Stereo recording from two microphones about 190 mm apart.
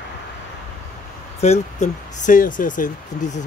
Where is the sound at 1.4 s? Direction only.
35° left (ahead or behind).